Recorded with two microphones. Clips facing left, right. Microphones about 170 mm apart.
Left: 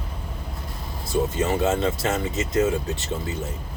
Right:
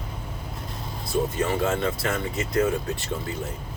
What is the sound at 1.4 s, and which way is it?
Speech, 25° left (ahead or behind).